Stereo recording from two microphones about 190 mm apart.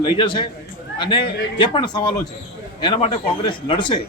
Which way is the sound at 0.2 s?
25° left (ahead or behind).